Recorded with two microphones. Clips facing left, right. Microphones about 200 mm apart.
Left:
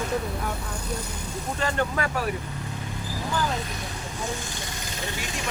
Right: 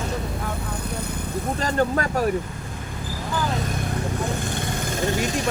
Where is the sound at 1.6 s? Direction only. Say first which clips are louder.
Right 3 dB; 40° right (ahead or behind).